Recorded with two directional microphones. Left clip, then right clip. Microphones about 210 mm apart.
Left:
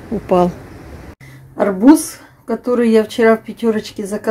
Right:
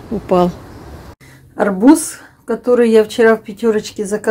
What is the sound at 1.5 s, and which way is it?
Speech, 5° right (ahead or behind).